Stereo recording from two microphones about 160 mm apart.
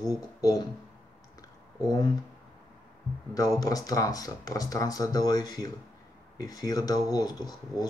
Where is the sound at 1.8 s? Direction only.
25° left (ahead or behind).